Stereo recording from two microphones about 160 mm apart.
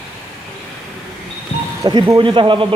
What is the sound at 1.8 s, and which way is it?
Speech, 25° right (ahead or behind).